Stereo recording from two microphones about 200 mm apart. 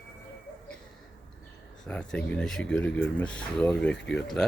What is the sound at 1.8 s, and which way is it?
Speech, 5° left (ahead or behind).